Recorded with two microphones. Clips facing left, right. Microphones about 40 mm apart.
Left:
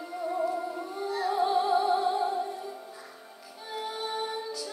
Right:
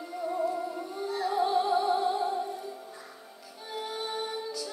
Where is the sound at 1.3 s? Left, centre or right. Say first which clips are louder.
Left 1 dB; centre.